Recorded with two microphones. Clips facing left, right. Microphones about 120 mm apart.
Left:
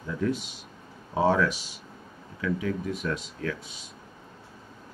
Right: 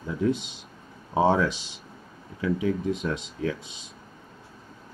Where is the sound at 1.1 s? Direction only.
25° right (ahead or behind).